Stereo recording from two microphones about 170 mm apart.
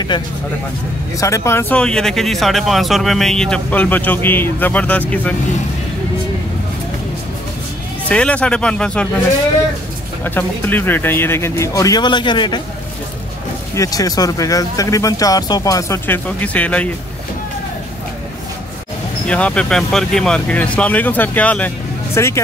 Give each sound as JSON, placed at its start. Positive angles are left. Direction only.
{"t": 0.1, "sound": "speech", "side_deg": 25}
{"t": 8.1, "sound": "speech", "side_deg": 5}
{"t": 10.2, "sound": "speech", "side_deg": 10}
{"t": 13.7, "sound": "speech", "side_deg": 20}
{"t": 19.2, "sound": "speech", "side_deg": 5}